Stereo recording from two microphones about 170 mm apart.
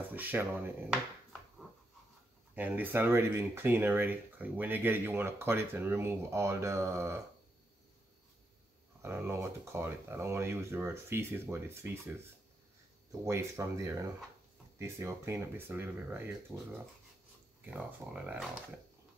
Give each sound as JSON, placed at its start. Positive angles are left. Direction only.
{"t": 0.1, "sound": "speech", "side_deg": -10}
{"t": 2.5, "sound": "speech", "side_deg": -10}
{"t": 9.0, "sound": "speech", "side_deg": -15}
{"t": 13.1, "sound": "speech", "side_deg": -15}
{"t": 17.6, "sound": "speech", "side_deg": -10}